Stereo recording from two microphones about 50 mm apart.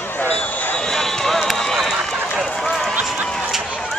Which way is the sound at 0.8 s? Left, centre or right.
Centre.